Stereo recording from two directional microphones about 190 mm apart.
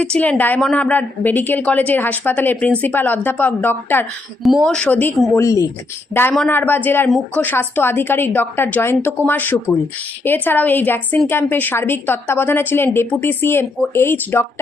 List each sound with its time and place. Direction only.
0.0 s a woman's voice: 5° left (ahead or behind)
5.4 s a woman's voice: 15° left (ahead or behind)
6.3 s a woman's voice: 5° left (ahead or behind)